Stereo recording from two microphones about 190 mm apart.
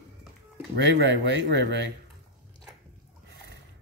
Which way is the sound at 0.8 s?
70° right (ahead or behind).